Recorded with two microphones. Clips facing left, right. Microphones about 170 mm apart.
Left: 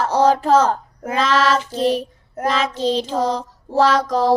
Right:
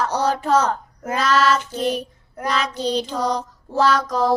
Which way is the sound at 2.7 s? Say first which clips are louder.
Left 4 dB; 90° left.